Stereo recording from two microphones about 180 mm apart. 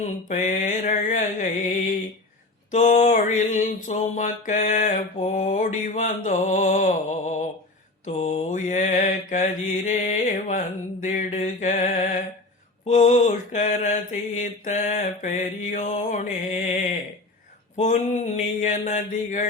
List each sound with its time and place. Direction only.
0.0 s mantra: 40° left (ahead or behind)
17.7 s a sound: 40° left (ahead or behind)
18.6 s mantra: 40° left (ahead or behind)